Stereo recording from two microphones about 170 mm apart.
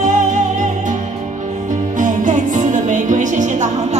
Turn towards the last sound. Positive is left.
turn(degrees=-45)  # may be behind; listen again after turning